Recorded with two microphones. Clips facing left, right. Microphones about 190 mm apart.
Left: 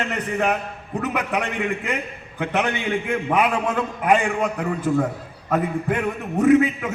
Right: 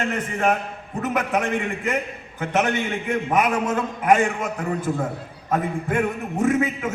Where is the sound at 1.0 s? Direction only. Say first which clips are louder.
Right 2 dB; 45° right (ahead or behind).